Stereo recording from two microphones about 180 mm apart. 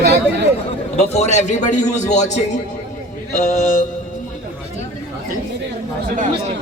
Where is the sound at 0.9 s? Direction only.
40° left (ahead or behind).